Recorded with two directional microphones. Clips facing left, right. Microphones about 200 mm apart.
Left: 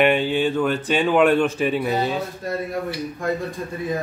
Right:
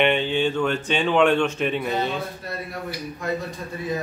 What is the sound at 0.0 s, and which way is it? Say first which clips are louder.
Speech: left 2 dB; 5° left (ahead or behind).